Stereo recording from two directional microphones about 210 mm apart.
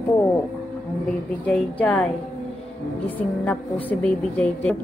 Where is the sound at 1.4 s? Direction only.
5° left (ahead or behind).